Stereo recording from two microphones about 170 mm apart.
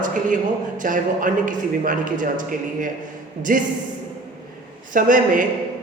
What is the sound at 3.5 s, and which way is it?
Speech, 55° right (ahead or behind).